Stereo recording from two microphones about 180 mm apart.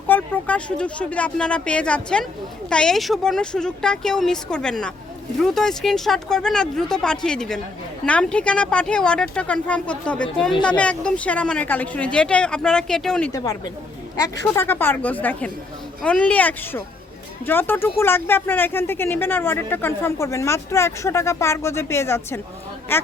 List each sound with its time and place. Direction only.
0.1 s speech: 5° left (ahead or behind)
13.3 s a woman's voice: 20° left (ahead or behind)